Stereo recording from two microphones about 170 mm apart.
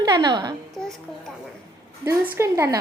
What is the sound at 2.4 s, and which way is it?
Speech, 15° right (ahead or behind).